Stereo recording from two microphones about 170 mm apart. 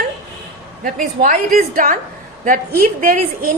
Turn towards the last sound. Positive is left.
turn(degrees=-55)  # may be behind; listen again after turning